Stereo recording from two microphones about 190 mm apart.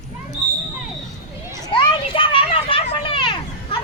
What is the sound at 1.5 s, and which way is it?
Children playing, 25° left (ahead or behind).